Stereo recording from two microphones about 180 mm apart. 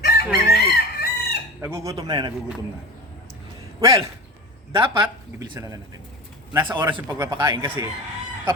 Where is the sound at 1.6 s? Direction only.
15° right (ahead or behind).